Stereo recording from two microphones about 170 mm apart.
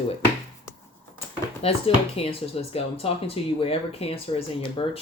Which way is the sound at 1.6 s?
35° left (ahead or behind).